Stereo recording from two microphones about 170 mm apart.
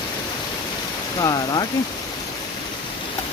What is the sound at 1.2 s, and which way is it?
Speech, 20° left (ahead or behind).